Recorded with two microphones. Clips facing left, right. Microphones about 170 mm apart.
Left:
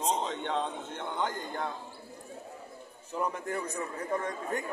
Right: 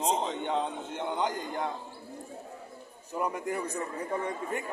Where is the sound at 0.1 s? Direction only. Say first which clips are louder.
Even; 15° right (ahead or behind).